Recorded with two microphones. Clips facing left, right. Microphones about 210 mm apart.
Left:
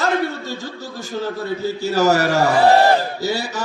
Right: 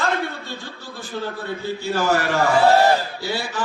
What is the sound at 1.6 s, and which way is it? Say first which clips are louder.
A man's voice: left 5 dB; 40° left (ahead or behind).